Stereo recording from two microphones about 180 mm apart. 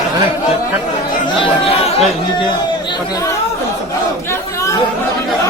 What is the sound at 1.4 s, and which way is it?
Speech, 35° left (ahead or behind).